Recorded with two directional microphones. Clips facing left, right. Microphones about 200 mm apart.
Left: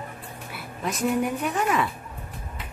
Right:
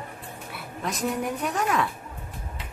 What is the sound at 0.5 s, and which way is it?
A woman's voice, centre (ahead or behind).